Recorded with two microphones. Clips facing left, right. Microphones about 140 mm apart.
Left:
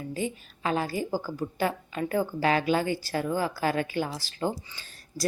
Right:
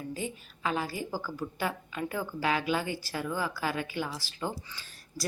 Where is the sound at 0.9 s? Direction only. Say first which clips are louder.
Left 5 dB; 25° left (ahead or behind).